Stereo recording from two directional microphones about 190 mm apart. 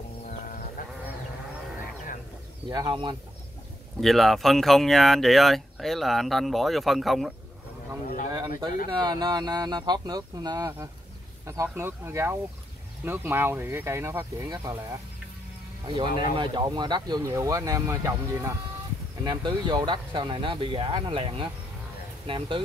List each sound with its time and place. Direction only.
0.8 s a sound: 45° left (ahead or behind)
2.7 s speech: 25° right (ahead or behind)
4.0 s speech: centre (ahead or behind)
8.3 s speech: 20° right (ahead or behind)
16.2 s speech: 25° right (ahead or behind)